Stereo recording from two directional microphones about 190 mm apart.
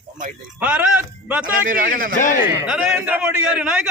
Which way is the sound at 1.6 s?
45° right (ahead or behind).